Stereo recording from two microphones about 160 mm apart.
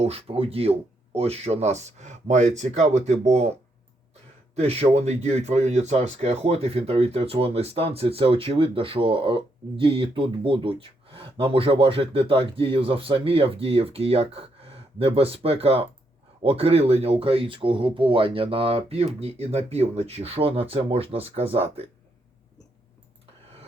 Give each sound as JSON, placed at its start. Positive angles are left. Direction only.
{"t": 0.0, "sound": "speech", "side_deg": -40}
{"t": 4.5, "sound": "speech", "side_deg": -40}